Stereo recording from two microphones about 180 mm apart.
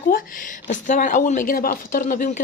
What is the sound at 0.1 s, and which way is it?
A woman's voice, 50° left (ahead or behind).